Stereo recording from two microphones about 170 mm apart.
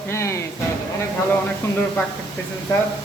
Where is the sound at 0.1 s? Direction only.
15° left (ahead or behind).